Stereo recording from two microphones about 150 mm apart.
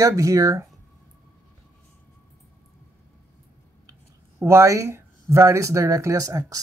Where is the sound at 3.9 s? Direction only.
20° right (ahead or behind).